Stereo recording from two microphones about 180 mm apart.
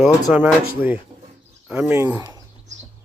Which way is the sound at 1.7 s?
10° right (ahead or behind).